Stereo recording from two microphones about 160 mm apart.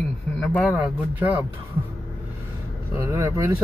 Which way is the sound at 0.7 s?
10° right (ahead or behind).